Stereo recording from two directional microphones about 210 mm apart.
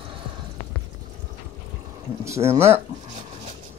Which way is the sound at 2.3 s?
15° right (ahead or behind).